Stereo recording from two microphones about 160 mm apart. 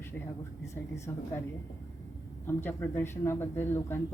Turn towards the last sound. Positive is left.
turn(degrees=15)  # may be behind; listen again after turning